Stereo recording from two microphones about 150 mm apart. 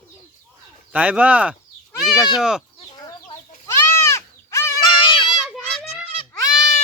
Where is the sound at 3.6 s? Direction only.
15° left (ahead or behind).